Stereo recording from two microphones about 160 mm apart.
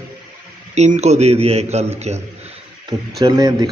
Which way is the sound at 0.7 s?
45° right (ahead or behind).